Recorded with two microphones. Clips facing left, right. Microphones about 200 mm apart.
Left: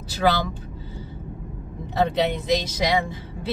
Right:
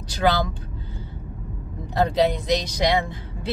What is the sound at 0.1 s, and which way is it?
Speech, 5° left (ahead or behind).